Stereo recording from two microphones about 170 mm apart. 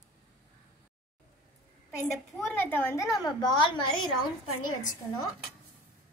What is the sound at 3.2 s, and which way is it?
A woman's voice, 25° left (ahead or behind).